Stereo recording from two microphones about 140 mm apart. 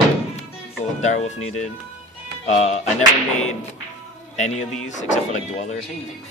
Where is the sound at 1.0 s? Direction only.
55° left (ahead or behind).